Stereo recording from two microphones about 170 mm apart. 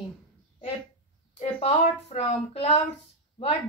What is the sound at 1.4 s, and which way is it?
Speech, 40° left (ahead or behind).